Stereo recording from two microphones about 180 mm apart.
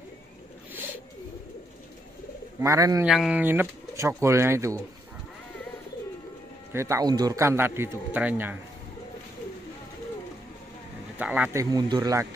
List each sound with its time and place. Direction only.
2.6 s a man's voice: 20° right (ahead or behind)
3.1 s a man's voice: 5° right (ahead or behind)
6.7 s a man's voice: 15° right (ahead or behind)
11.1 s a man's voice: 10° right (ahead or behind)
11.7 s a man's voice: 20° right (ahead or behind)